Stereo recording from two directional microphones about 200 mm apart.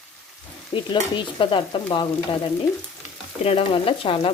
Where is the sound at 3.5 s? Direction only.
30° left (ahead or behind).